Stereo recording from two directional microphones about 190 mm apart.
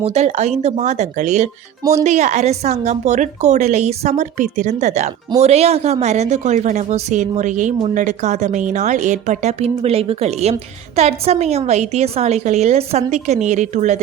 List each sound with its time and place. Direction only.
0.0 s speech: 35° right (ahead or behind)
1.8 s speech: 15° right (ahead or behind)
2.0 s speech: 40° right (ahead or behind)